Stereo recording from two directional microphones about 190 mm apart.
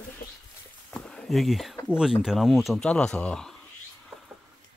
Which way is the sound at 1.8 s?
5° right (ahead or behind).